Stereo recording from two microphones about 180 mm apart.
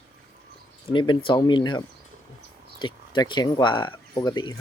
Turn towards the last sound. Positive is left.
turn(degrees=20)  # may be behind; listen again after turning